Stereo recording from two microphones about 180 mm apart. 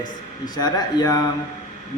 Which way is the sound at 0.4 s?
20° left (ahead or behind).